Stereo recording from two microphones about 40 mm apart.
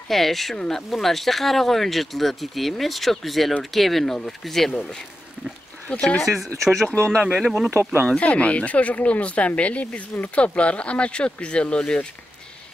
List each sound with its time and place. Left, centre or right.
0.1 s speech: centre
6.1 s speech: centre
6.9 s speech: left
7.7 s speech: right
8.2 s speech: left